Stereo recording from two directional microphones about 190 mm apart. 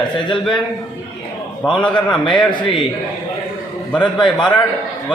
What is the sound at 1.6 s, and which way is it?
A man's voice, 25° left (ahead or behind).